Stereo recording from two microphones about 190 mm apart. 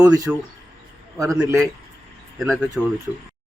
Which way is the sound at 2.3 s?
Centre (ahead or behind).